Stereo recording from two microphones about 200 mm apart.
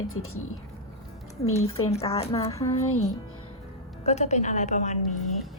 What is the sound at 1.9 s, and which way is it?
Speech, 30° left (ahead or behind).